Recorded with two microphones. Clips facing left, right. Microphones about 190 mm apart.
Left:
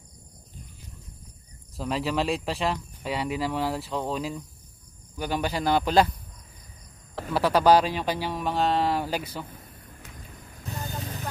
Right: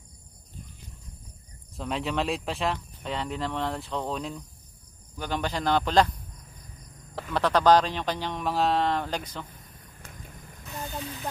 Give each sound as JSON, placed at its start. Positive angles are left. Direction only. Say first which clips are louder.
{"t": 1.8, "sound": "speech", "louder": "left 2 dB", "side_deg": 0}
{"t": 7.3, "sound": "speech", "louder": "left 1 dB", "side_deg": 5}
{"t": 10.2, "sound": "mechanisms", "louder": "even", "side_deg": -50}
{"t": 10.9, "sound": "vehicle", "louder": "left 1 dB", "side_deg": 45}